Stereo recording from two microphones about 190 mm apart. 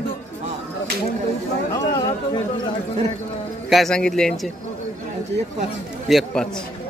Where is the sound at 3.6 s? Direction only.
Centre (ahead or behind).